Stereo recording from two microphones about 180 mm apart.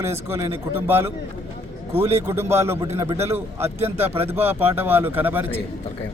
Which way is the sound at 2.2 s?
15° right (ahead or behind).